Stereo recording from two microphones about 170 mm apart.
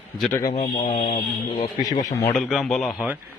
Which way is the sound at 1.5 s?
25° left (ahead or behind).